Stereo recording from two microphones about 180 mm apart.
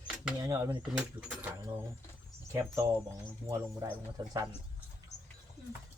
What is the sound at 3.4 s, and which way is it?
Speech, 15° right (ahead or behind).